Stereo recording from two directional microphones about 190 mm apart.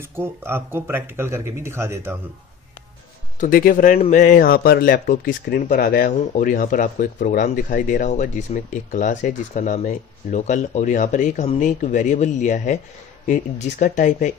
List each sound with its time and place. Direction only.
0.0 s speech: 10° right (ahead or behind)
3.3 s speech: 50° left (ahead or behind)